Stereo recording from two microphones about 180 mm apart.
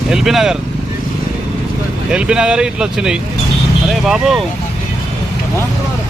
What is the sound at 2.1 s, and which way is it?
Speech, 5° right (ahead or behind).